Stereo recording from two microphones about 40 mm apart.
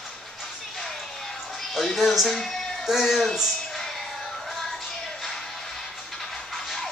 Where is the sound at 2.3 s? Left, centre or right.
Centre.